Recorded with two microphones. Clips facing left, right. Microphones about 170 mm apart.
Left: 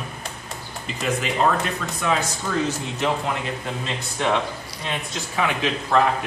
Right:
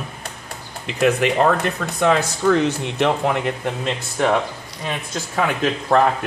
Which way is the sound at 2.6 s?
65° right (ahead or behind).